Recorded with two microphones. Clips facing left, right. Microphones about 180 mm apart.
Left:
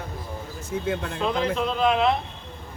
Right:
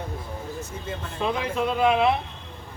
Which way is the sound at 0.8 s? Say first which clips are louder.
Left 6 dB; 70° left (ahead or behind).